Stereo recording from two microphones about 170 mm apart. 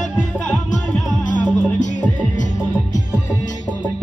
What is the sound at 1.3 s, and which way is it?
Music, 45° left (ahead or behind).